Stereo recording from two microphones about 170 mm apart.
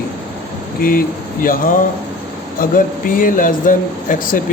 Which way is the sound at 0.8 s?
55° left (ahead or behind).